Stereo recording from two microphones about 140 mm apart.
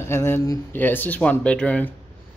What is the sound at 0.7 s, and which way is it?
Speech, 15° left (ahead or behind).